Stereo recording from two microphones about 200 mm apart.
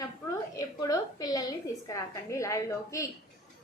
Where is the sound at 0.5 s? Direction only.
15° left (ahead or behind).